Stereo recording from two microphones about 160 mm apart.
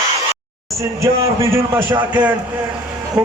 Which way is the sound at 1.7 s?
10° right (ahead or behind).